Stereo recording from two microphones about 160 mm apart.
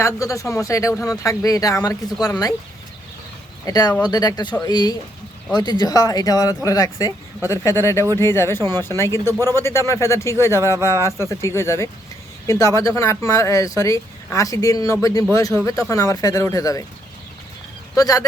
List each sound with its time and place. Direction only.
0.0 s speech: 20° left (ahead or behind)
3.7 s speech: 25° left (ahead or behind)
17.9 s speech: 20° left (ahead or behind)